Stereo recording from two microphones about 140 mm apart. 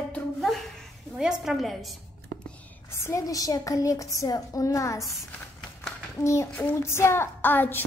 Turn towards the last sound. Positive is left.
turn(degrees=15)  # may be behind; listen again after turning